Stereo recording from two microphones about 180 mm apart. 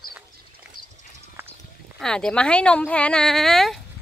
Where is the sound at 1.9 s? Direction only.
5° left (ahead or behind).